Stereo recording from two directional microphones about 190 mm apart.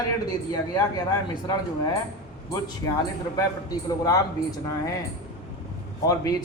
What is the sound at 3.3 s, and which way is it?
Speech, 20° left (ahead or behind).